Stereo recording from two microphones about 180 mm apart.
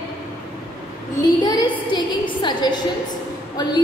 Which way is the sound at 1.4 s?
25° left (ahead or behind).